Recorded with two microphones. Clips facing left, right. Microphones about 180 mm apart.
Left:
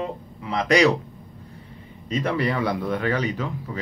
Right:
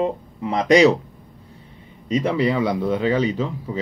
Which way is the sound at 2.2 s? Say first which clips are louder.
Right 3 dB; 15° right (ahead or behind).